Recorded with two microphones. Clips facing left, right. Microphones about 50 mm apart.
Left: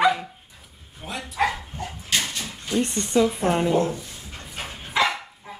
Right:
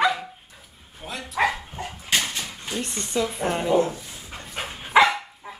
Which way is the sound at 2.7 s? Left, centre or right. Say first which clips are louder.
Left 7 dB; centre.